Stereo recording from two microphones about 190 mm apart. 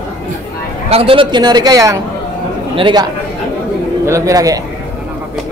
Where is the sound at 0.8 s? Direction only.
30° right (ahead or behind).